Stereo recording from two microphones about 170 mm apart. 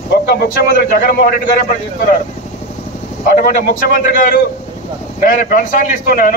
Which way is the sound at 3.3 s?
55° left (ahead or behind).